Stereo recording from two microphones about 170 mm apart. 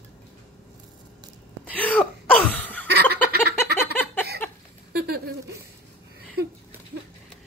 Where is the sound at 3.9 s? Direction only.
10° left (ahead or behind).